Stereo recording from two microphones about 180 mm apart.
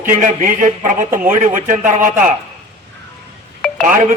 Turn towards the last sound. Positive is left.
turn(degrees=-45)  # may be behind; listen again after turning